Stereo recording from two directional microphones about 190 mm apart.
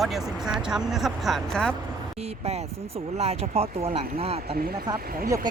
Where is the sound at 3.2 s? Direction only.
30° right (ahead or behind).